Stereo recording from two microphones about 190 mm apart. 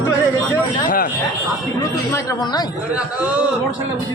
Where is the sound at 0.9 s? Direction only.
45° left (ahead or behind).